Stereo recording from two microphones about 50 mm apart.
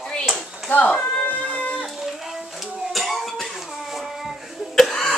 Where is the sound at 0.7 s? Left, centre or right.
Left.